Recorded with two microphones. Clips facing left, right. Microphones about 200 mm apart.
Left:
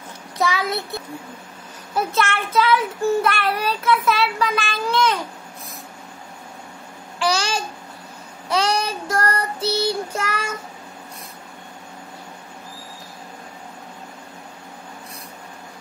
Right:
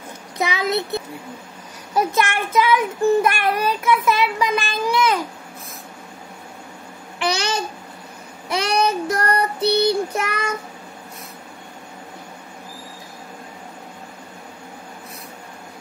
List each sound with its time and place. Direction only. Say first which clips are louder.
0.4 s a child's voice: right 1 dB; 20° right (ahead or behind)
2.1 s child singing: right 1 dB; 15° right (ahead or behind)
7.2 s babbling: even; 20° right (ahead or behind)
8.8 s child singing: right 3 dB; 20° right (ahead or behind)